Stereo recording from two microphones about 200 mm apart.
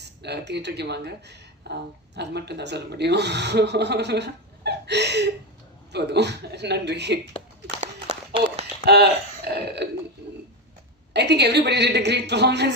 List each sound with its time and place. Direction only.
0.0 s speech: 60° right (ahead or behind)
8.8 s speech: 55° right (ahead or behind)
11.1 s speech: 60° right (ahead or behind)